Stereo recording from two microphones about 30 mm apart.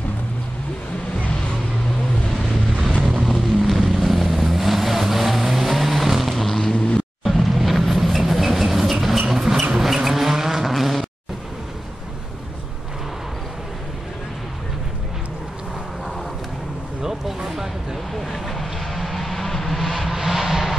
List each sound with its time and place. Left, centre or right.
3.0 s vehicle: centre
3.3 s vehicle: centre
6.4 s vehicle: centre
7.3 s vehicle: centre
9.3 s a sound: centre
9.8 s vehicle: centre
10.7 s a sound: centre
17.0 s a sound: centre
18.1 s vehicle: centre
20.1 s vehicle: centre